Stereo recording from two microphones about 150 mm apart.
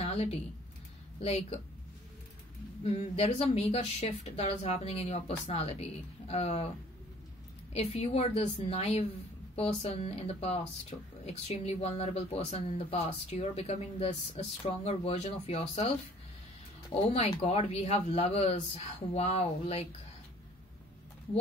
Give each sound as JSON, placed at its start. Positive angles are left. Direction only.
{"t": 0.0, "sound": "a sound", "side_deg": 40}
{"t": 1.2, "sound": "speech", "side_deg": 45}
{"t": 2.8, "sound": "speech", "side_deg": 45}
{"t": 7.7, "sound": "speech", "side_deg": 45}
{"t": 17.1, "sound": "speech", "side_deg": 45}